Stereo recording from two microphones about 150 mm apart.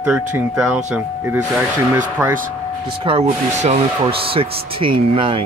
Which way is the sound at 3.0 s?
45° right (ahead or behind).